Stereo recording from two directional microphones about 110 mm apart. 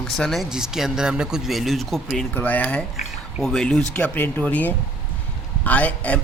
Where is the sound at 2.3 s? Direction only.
15° left (ahead or behind).